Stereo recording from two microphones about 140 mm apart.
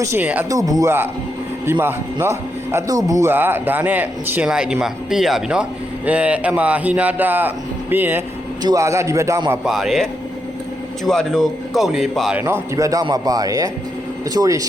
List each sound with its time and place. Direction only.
0.0 s speech: 15° right (ahead or behind)
0.5 s speech: 25° right (ahead or behind)
9.6 s speech: centre (ahead or behind)
12.4 s speech: 20° right (ahead or behind)